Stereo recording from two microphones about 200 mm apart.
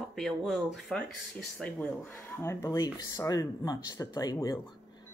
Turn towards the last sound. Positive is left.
turn(degrees=20)  # may be behind; listen again after turning